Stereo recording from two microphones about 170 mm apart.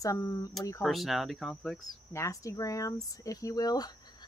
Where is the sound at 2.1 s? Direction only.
20° left (ahead or behind).